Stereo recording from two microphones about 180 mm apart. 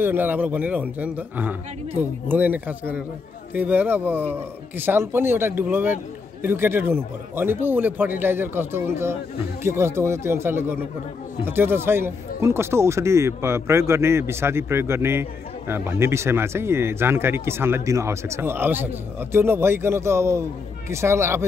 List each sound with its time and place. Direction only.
0.0 s speech: 10° right (ahead or behind)